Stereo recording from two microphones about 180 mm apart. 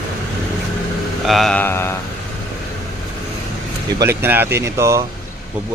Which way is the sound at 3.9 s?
15° right (ahead or behind).